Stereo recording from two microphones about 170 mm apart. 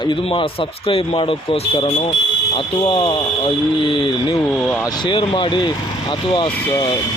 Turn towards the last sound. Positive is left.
turn(degrees=30)  # may be behind; listen again after turning